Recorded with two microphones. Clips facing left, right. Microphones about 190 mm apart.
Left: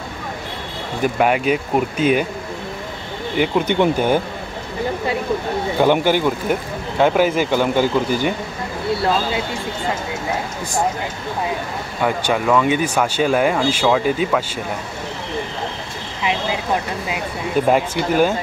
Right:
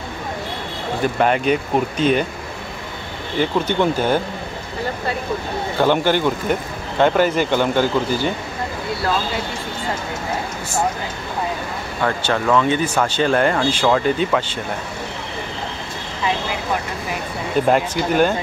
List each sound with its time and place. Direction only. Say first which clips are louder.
1.0 s speech: left 1 dB; 10° left (ahead or behind)
3.3 s speech: left 1 dB; 15° left (ahead or behind)
5.8 s speech: left 1 dB; 10° left (ahead or behind)
12.0 s speech: left 1 dB; 10° left (ahead or behind)
17.6 s speech: even; 5° left (ahead or behind)